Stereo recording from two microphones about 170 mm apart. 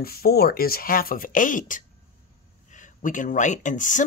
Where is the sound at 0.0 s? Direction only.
65° left (ahead or behind).